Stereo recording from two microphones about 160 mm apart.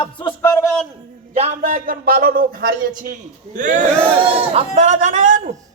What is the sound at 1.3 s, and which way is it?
A man's voice, 50° right (ahead or behind).